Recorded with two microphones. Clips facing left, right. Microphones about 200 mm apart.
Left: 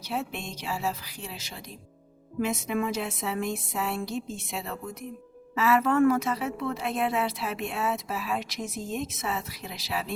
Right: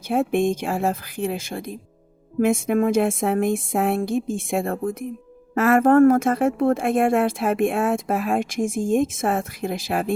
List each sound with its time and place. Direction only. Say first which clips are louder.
0.1 s speech: right 13 dB; 50° right (ahead or behind)